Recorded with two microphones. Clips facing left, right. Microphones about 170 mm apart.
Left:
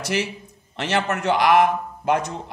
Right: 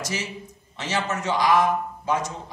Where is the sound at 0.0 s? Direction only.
65° left (ahead or behind).